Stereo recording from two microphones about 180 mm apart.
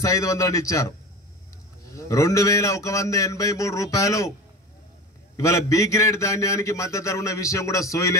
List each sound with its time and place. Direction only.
0.0 s a man's voice: 15° left (ahead or behind)
5.4 s a man's voice: 15° left (ahead or behind)